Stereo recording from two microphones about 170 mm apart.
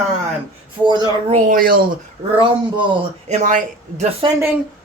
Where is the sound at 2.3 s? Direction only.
30° right (ahead or behind).